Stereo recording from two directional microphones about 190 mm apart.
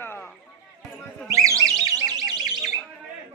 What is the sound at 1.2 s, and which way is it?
Alarm, 15° right (ahead or behind).